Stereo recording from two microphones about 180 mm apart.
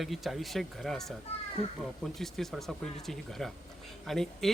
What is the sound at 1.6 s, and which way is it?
Speech, 35° left (ahead or behind).